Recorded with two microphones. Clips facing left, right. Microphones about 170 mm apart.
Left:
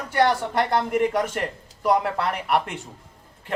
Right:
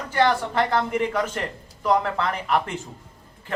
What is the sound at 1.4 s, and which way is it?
Speech, 10° left (ahead or behind).